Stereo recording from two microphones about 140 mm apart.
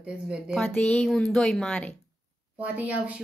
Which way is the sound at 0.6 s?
10° left (ahead or behind).